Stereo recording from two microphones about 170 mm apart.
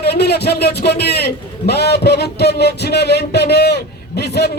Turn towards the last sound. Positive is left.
turn(degrees=75)  # may be behind; listen again after turning